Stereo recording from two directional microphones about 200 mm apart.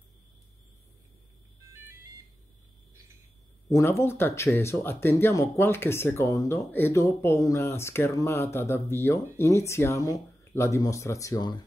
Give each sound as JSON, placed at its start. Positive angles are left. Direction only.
{"t": 3.7, "sound": "speech", "side_deg": 15}